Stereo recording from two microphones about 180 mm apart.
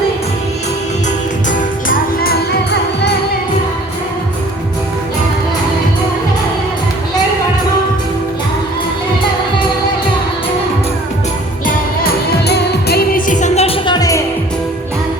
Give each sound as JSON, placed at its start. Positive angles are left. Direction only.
{"t": 1.5, "sound": "music", "side_deg": 50}
{"t": 11.6, "sound": "music", "side_deg": 60}